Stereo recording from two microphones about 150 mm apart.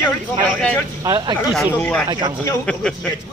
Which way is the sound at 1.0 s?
25° right (ahead or behind).